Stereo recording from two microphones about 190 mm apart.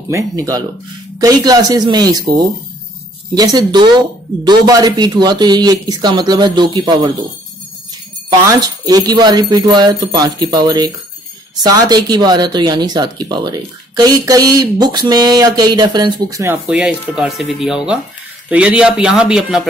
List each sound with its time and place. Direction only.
0.1 s speech: 20° right (ahead or behind)
8.5 s speech: 20° right (ahead or behind)
16.6 s speech: 5° right (ahead or behind)